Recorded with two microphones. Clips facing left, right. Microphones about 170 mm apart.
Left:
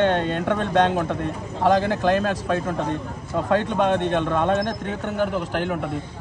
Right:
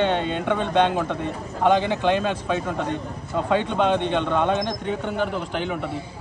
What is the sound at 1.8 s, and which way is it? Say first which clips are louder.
Speech: left 1 dB; 50° left (ahead or behind).